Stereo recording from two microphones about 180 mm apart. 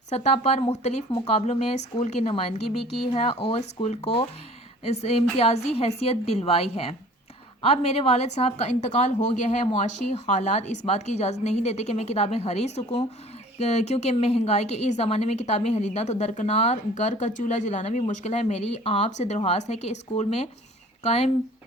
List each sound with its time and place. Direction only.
0.1 s a woman's voice: 35° left (ahead or behind)